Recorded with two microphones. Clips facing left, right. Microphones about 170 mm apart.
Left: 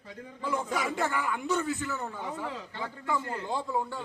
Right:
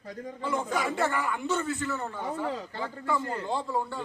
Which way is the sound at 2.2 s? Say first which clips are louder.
Right 4 dB; 35° right (ahead or behind).